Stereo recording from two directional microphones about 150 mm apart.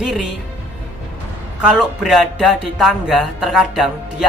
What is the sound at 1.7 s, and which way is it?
Speech, centre (ahead or behind).